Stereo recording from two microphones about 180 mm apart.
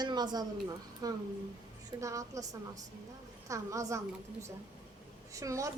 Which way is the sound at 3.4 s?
15° right (ahead or behind).